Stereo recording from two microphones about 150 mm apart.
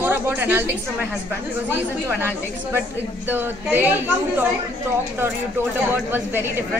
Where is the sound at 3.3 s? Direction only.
10° right (ahead or behind).